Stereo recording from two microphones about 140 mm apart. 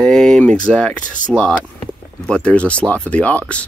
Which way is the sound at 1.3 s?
5° right (ahead or behind).